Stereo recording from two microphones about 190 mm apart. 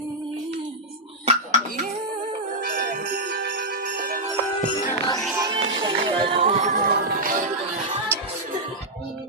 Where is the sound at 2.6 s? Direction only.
50° right (ahead or behind).